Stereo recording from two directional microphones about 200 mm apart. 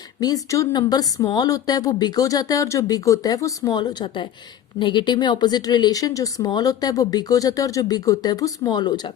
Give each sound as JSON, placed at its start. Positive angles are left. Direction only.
{"t": 0.2, "sound": "speech", "side_deg": 15}